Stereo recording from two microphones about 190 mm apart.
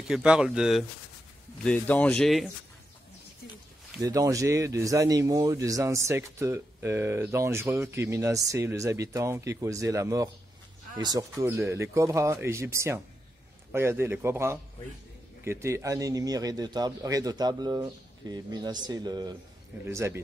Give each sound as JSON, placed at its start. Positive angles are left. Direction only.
{"t": 0.1, "sound": "speech", "side_deg": -5}
{"t": 4.0, "sound": "a man's voice", "side_deg": -20}